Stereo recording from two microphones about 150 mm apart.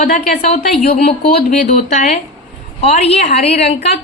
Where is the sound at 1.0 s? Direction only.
90° left.